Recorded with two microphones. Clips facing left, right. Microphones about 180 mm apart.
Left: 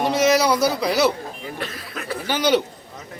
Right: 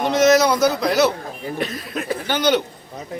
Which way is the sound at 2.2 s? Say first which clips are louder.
Even; 5° left (ahead or behind).